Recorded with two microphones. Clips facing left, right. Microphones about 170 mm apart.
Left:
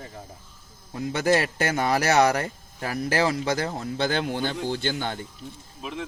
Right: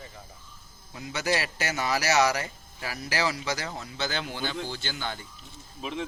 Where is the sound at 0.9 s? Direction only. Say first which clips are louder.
Left 7 dB; 50° left (ahead or behind).